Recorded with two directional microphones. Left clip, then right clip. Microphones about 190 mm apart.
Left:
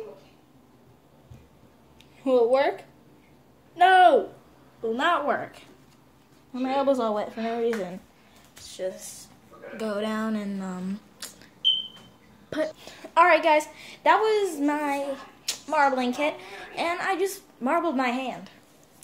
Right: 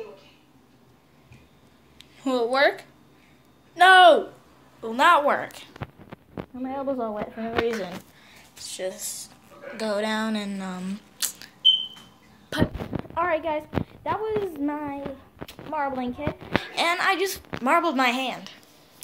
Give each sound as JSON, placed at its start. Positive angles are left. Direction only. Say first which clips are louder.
{"t": 2.0, "sound": "a sound", "louder": "left 4 dB", "side_deg": -5}
{"t": 3.7, "sound": "speech", "louder": "right 3 dB", "side_deg": -5}
{"t": 6.5, "sound": "speech", "louder": "left 6 dB", "side_deg": 25}
{"t": 8.6, "sound": "a woman's voice", "louder": "right 1 dB", "side_deg": 0}